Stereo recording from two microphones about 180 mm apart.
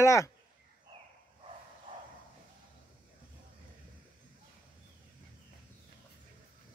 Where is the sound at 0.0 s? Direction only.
15° left (ahead or behind).